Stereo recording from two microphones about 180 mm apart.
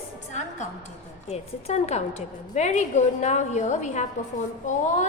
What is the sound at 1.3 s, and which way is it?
A woman's voice, 35° left (ahead or behind).